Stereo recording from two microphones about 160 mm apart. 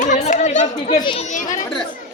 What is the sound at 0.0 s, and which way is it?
Chatter, 50° left (ahead or behind).